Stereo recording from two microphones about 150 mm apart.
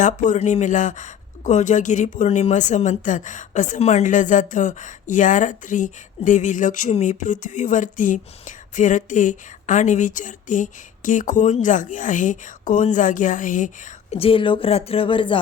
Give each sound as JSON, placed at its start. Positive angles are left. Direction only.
{"t": 0.0, "sound": "speech", "side_deg": 55}
{"t": 14.1, "sound": "speech", "side_deg": 40}